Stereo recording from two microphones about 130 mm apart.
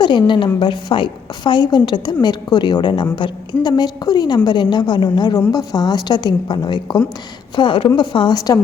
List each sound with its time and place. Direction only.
0.0 s a woman's voice: 35° left (ahead or behind)